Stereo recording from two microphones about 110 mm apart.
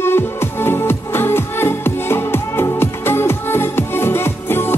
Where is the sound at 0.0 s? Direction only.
20° left (ahead or behind).